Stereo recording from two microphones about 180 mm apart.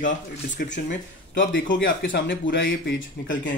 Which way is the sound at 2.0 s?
55° left (ahead or behind).